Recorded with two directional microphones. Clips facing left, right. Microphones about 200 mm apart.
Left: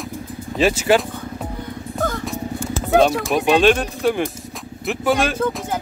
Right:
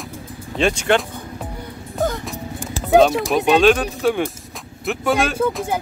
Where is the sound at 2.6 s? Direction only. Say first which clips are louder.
Right 3 dB; 15° right (ahead or behind).